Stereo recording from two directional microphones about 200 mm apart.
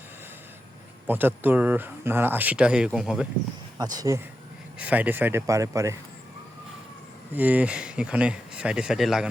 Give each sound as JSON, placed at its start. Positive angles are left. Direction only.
{"t": 1.0, "sound": "speech", "side_deg": -10}
{"t": 3.9, "sound": "speech", "side_deg": -15}
{"t": 7.3, "sound": "speech", "side_deg": -10}